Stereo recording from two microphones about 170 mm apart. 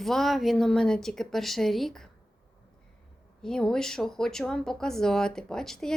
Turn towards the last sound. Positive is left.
turn(degrees=5)  # may be behind; listen again after turning